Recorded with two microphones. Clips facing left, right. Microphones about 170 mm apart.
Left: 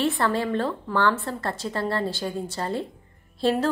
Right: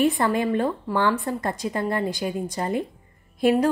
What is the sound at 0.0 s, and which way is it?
A woman's voice, 15° right (ahead or behind).